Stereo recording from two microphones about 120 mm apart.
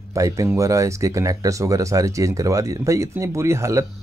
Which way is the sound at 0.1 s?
25° right (ahead or behind).